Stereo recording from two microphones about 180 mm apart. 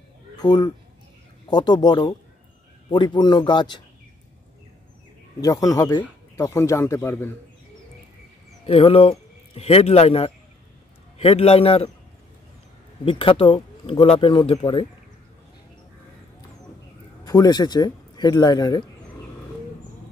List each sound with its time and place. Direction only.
0.4 s speech: 25° left (ahead or behind)
5.4 s speech: 20° left (ahead or behind)
8.6 s a man's voice: 30° left (ahead or behind)
13.0 s speech: 30° left (ahead or behind)
17.2 s speech: 20° left (ahead or behind)